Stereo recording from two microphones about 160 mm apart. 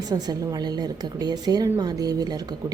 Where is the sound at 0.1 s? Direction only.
25° right (ahead or behind).